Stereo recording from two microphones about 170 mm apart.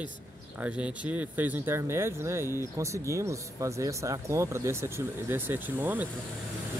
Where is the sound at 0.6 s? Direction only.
5° right (ahead or behind).